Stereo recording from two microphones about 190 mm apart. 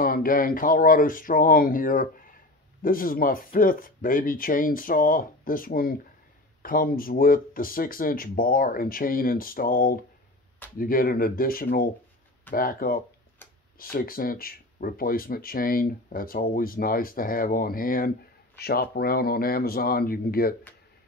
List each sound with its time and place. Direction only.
0.0 s speech: 50° left (ahead or behind)